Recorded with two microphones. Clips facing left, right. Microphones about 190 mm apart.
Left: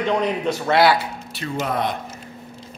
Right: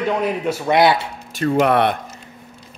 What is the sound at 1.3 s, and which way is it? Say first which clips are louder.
Speech: right 9 dB; 60° right (ahead or behind).